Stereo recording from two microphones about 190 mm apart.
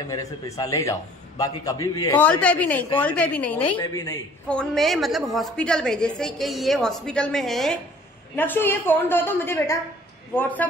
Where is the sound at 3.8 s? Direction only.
20° left (ahead or behind).